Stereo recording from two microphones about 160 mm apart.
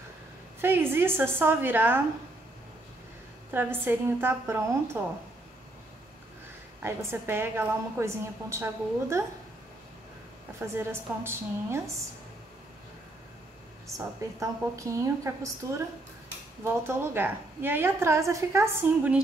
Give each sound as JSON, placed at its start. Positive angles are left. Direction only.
{"t": 0.6, "sound": "a woman's voice", "side_deg": -15}
{"t": 3.5, "sound": "a woman's voice", "side_deg": -15}
{"t": 6.8, "sound": "a woman's voice", "side_deg": -15}
{"t": 10.6, "sound": "a woman's voice", "side_deg": -15}
{"t": 13.9, "sound": "a woman's voice", "side_deg": -20}